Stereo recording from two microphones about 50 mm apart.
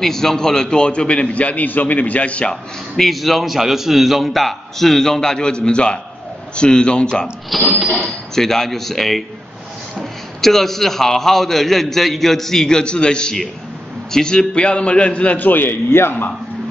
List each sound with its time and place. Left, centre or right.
0.0 s a man's voice: centre; by 2.5 s left
2.5 s a man's voice: centre
7.5 s a man's voice: centre
10.4 s a man's voice: centre; by 16.3 s left